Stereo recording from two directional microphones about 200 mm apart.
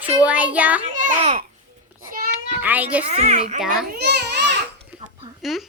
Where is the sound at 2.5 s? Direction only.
10° right (ahead or behind).